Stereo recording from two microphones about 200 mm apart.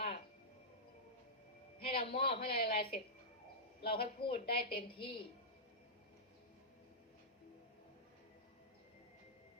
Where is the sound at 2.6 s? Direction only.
50° left (ahead or behind).